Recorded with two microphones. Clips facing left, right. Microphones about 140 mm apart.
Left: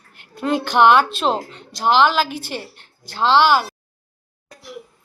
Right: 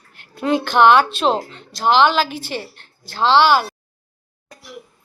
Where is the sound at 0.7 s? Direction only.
15° left (ahead or behind).